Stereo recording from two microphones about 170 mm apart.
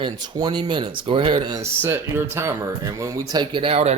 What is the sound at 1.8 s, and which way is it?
Speech, 15° right (ahead or behind).